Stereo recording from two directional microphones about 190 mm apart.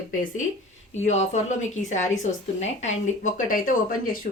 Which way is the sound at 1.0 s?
35° left (ahead or behind).